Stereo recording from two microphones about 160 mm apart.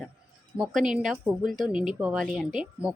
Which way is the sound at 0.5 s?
Centre (ahead or behind).